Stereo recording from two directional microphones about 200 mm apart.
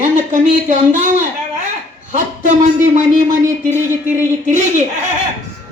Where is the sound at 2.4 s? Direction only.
40° right (ahead or behind).